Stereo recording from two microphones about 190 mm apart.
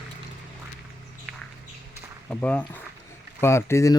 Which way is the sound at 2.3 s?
5° left (ahead or behind).